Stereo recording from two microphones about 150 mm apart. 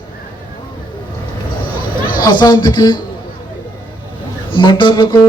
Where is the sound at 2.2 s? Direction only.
25° left (ahead or behind).